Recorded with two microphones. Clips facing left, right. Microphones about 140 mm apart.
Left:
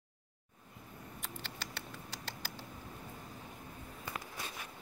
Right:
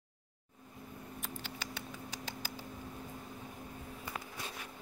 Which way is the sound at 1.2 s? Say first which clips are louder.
Right 1 dB; centre (ahead or behind).